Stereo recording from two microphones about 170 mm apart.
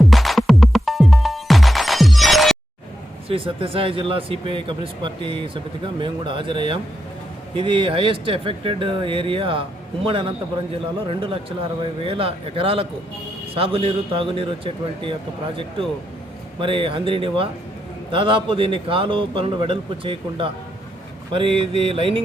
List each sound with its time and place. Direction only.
0.0 s music: centre (ahead or behind)
3.2 s speech: 30° right (ahead or behind)
16.6 s speech: 30° right (ahead or behind)